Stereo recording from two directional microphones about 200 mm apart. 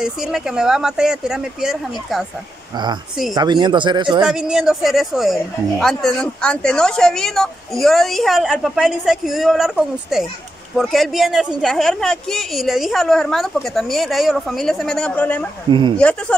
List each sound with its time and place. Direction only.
0.0 s speech: 5° right (ahead or behind)
3.3 s speech: 20° right (ahead or behind)
4.2 s speech: 5° right (ahead or behind)